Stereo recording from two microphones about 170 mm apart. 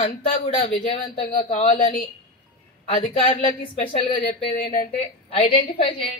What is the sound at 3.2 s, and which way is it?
A woman's voice, 35° left (ahead or behind).